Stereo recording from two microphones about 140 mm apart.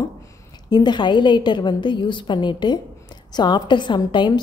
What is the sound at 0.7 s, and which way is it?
A woman's voice, 30° left (ahead or behind).